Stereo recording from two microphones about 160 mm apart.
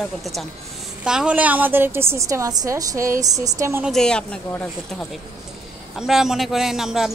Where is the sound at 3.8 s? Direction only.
5° left (ahead or behind).